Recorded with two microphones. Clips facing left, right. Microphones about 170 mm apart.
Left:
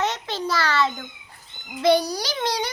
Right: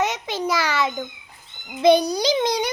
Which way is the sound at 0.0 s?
15° right (ahead or behind).